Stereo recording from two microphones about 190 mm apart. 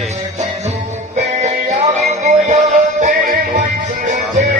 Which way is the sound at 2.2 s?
35° right (ahead or behind).